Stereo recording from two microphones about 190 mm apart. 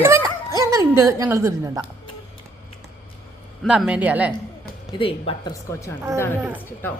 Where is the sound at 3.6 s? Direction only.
5° right (ahead or behind).